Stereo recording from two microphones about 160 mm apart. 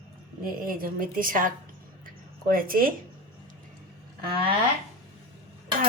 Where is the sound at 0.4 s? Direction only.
65° right (ahead or behind).